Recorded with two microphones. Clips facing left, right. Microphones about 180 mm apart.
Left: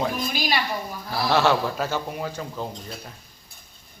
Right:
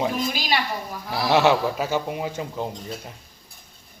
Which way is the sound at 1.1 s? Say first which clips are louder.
Right 2 dB; 15° right (ahead or behind).